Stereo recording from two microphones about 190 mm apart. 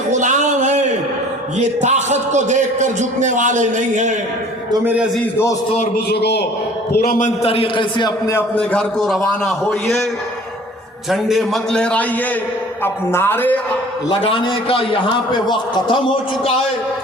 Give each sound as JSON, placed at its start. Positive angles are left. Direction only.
{"t": 0.1, "sound": "a sound", "side_deg": -40}
{"t": 1.5, "sound": "a man's voice", "side_deg": -35}
{"t": 4.7, "sound": "a man's voice", "side_deg": -10}
{"t": 6.1, "sound": "a man's voice", "side_deg": 60}
{"t": 11.1, "sound": "a man's voice", "side_deg": 0}
{"t": 14.1, "sound": "a man's voice", "side_deg": 25}